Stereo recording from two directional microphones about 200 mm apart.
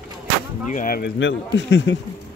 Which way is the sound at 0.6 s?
40° left (ahead or behind).